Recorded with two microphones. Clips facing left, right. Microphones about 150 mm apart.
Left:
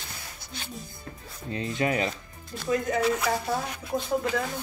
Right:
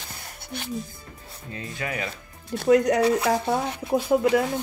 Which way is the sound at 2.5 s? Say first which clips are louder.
Right 8 dB; 70° right (ahead or behind).